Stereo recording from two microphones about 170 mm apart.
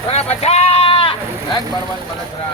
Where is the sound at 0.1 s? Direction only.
40° left (ahead or behind).